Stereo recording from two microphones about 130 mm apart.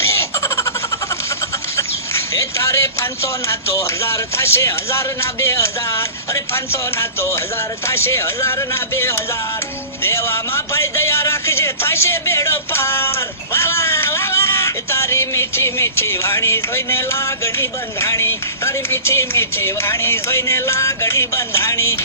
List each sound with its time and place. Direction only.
0.0 s baby laughter: 20° left (ahead or behind)
2.1 s a man's voice: 20° left (ahead or behind)